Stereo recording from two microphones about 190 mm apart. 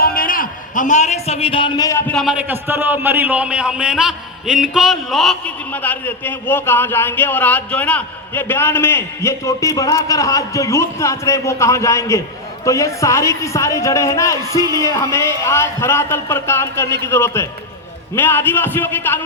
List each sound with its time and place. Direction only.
0.0 s a man's voice: 50° left (ahead or behind); by 2.1 s 15° left (ahead or behind)
2.1 s a man's voice: 5° right (ahead or behind); by 19.2 s 10° left (ahead or behind)